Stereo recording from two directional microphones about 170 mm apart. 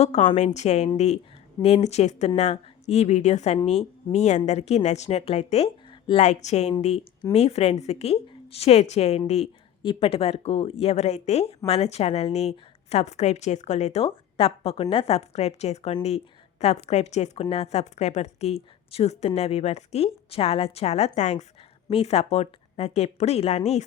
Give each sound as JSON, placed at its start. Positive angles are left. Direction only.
{"t": 0.0, "sound": "a woman's voice", "side_deg": 40}